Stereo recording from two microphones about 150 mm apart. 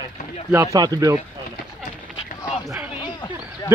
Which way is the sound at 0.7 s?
25° right (ahead or behind).